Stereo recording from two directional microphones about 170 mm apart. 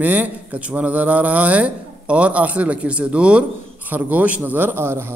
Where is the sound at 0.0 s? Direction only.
10° right (ahead or behind).